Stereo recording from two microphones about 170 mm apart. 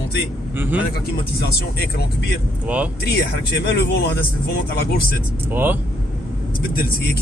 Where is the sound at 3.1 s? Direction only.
75° left (ahead or behind).